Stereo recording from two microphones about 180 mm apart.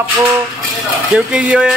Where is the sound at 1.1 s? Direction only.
5° right (ahead or behind).